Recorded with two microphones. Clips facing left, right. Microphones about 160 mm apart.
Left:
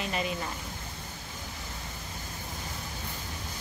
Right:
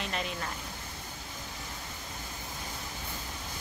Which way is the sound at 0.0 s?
5° left (ahead or behind).